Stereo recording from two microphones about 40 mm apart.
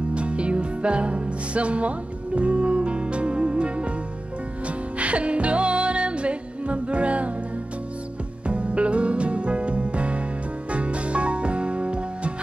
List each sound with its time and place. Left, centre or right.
0.1 s music: right
8.5 s music: right